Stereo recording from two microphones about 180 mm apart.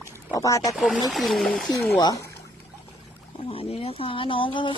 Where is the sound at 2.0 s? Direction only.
20° left (ahead or behind).